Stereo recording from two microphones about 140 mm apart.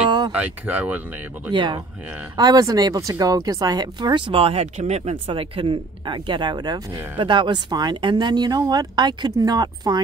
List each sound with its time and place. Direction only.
0.3 s speech: 10° right (ahead or behind)
1.5 s a woman's voice: 35° right (ahead or behind); by 5.1 s 50° right (ahead or behind)
5.1 s speech: 35° right (ahead or behind)